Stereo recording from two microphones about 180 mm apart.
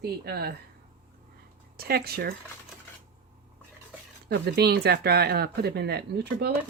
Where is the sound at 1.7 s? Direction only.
60° right (ahead or behind).